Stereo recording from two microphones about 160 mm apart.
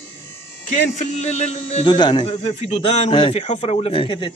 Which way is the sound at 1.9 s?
30° left (ahead or behind).